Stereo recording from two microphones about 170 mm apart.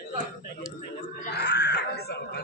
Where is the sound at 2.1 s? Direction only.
70° left (ahead or behind).